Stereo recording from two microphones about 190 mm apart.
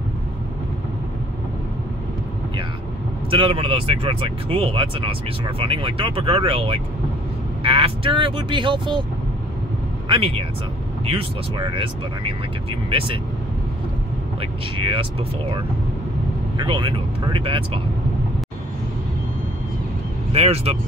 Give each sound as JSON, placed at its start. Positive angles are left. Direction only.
{"t": 3.3, "sound": "speech", "side_deg": -25}
{"t": 10.0, "sound": "speech", "side_deg": -25}
{"t": 14.4, "sound": "speech", "side_deg": -30}
{"t": 20.3, "sound": "speech", "side_deg": -30}